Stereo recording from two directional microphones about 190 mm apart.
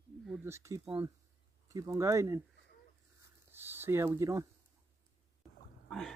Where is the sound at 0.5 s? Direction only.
15° right (ahead or behind).